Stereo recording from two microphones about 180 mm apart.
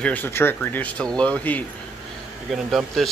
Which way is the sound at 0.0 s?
10° left (ahead or behind).